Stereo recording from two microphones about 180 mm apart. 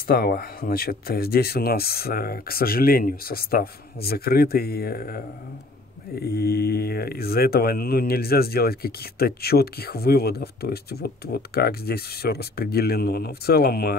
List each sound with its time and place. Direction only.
0.0 s speech: 55° left (ahead or behind)